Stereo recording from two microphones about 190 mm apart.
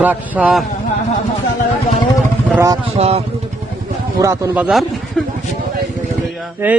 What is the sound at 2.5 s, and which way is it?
Speech, 15° right (ahead or behind).